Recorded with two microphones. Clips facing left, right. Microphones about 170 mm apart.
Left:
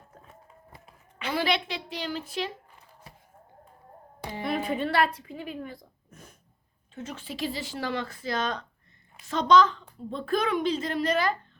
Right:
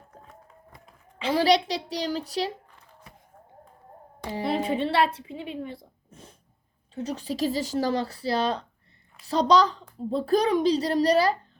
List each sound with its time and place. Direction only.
1.2 s a woman's voice: 35° right (ahead or behind)
4.3 s a woman's voice: 30° right (ahead or behind)